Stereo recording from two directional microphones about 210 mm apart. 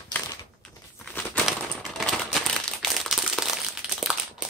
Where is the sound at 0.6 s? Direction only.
5° left (ahead or behind).